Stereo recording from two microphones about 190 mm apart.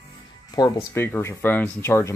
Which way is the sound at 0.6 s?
20° left (ahead or behind).